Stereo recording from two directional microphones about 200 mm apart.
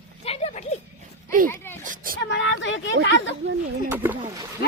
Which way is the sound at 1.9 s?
45° right (ahead or behind).